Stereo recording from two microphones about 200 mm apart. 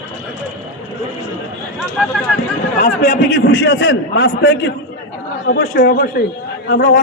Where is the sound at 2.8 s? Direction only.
40° left (ahead or behind).